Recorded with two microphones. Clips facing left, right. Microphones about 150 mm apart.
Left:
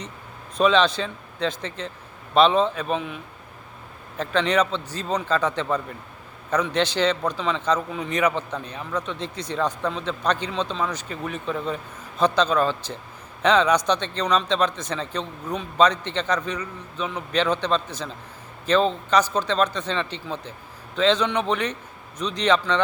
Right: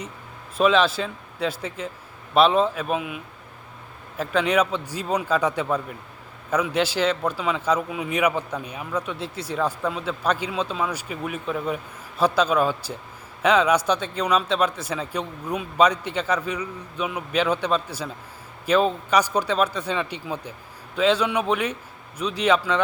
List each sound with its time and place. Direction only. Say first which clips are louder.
0.5 s speech: even; 5° right (ahead or behind)
4.2 s a man's voice: even; 5° right (ahead or behind)